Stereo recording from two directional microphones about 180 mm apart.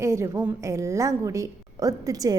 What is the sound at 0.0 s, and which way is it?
A woman's voice, 15° right (ahead or behind).